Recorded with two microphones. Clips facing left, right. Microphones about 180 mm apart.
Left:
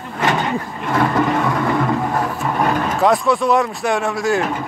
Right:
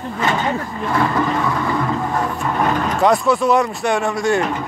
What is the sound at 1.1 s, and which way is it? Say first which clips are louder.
Vehicle: left 2 dB; 15° left (ahead or behind).